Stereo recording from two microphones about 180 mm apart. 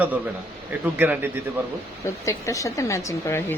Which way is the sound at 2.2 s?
15° left (ahead or behind).